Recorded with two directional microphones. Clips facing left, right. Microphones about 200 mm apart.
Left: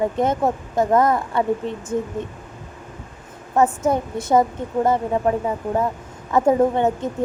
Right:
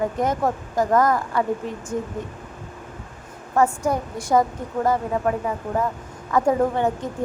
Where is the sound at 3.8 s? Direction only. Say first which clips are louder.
Left 3 dB; 25° left (ahead or behind).